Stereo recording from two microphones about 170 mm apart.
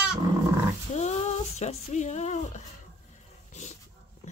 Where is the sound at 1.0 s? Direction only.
40° left (ahead or behind).